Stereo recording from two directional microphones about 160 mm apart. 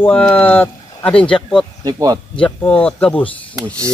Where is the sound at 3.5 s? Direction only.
20° right (ahead or behind).